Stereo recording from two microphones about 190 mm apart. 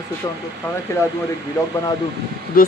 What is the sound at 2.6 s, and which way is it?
Speech, 50° left (ahead or behind).